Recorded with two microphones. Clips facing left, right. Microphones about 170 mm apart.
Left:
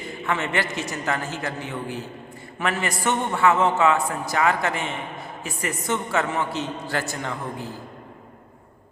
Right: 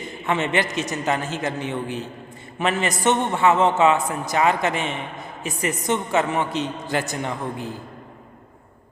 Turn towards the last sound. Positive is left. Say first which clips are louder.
# right 3 dB
turn(degrees=-20)  # may be behind; listen again after turning